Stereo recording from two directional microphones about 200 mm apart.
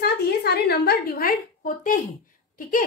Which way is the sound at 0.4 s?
50° left (ahead or behind).